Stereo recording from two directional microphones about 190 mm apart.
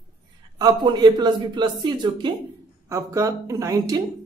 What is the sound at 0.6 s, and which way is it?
A woman's voice, 20° right (ahead or behind).